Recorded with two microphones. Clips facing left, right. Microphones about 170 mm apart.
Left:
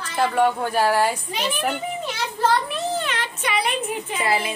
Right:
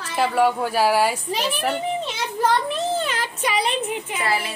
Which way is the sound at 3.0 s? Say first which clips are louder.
Right 2 dB; 35° right (ahead or behind).